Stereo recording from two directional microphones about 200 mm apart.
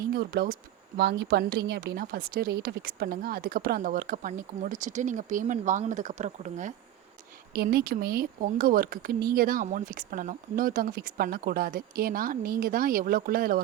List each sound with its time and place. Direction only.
0.0 s speech: 50° right (ahead or behind)
7.5 s speech: 50° right (ahead or behind)